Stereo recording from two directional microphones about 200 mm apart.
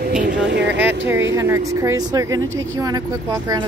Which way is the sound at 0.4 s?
60° right (ahead or behind).